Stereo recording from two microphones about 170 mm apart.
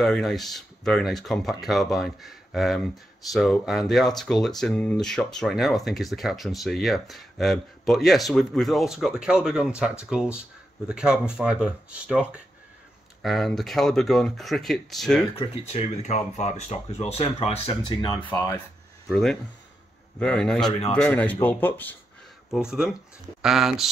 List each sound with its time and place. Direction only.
0.0 s speech: centre (ahead or behind)
15.3 s speech: 35° left (ahead or behind)
18.3 s speech: 20° left (ahead or behind)
19.0 s speech: 5° left (ahead or behind)
22.5 s speech: 5° right (ahead or behind)